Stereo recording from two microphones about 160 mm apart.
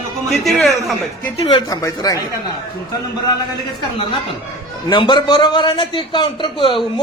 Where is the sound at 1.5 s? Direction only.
25° left (ahead or behind).